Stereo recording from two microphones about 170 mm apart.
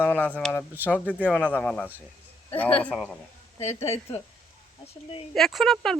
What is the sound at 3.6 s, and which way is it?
Speech, 40° left (ahead or behind).